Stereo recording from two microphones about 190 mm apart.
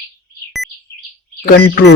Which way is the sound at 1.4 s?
65° left (ahead or behind).